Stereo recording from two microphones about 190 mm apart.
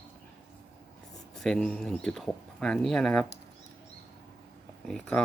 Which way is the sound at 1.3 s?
5° left (ahead or behind).